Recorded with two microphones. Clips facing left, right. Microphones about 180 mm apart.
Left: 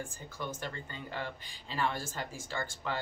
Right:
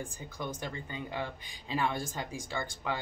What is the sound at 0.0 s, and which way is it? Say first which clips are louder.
Speech: right 1 dB; 15° right (ahead or behind).